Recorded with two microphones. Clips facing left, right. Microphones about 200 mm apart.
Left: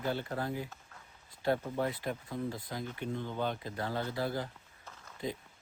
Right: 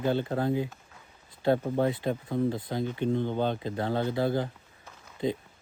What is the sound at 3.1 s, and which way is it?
Speech, 60° right (ahead or behind).